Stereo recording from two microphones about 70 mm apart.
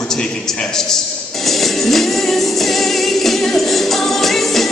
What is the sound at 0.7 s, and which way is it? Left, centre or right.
Music, centre.